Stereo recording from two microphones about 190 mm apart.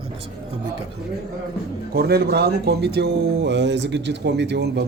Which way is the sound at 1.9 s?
55° right (ahead or behind).